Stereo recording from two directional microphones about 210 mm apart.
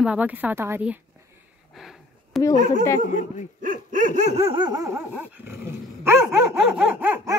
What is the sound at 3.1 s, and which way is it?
Speech, 35° left (ahead or behind).